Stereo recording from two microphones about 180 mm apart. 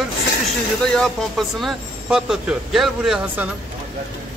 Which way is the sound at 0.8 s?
5° left (ahead or behind).